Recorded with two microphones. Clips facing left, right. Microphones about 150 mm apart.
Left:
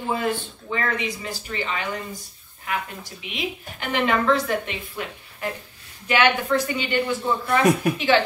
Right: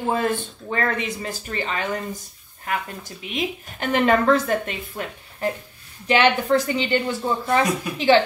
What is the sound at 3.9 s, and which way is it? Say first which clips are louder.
Speech: right 3 dB; 45° right (ahead or behind).